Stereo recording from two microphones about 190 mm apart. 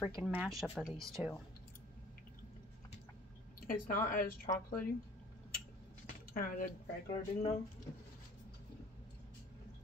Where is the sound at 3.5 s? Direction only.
45° left (ahead or behind).